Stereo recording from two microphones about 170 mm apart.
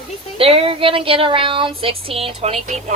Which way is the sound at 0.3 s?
35° right (ahead or behind).